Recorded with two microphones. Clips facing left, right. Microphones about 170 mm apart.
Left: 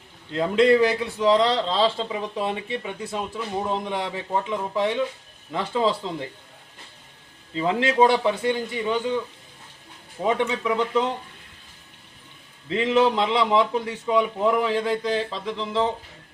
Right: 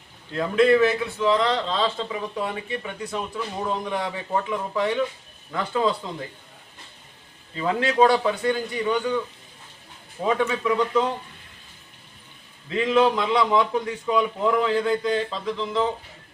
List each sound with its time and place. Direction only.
0.3 s a man's voice: 25° left (ahead or behind)
7.5 s a man's voice: 25° left (ahead or behind)
10.2 s a man's voice: 20° left (ahead or behind)
12.6 s a man's voice: 20° left (ahead or behind)